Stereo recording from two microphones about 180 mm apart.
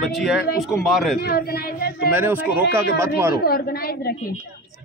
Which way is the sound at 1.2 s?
60° left (ahead or behind).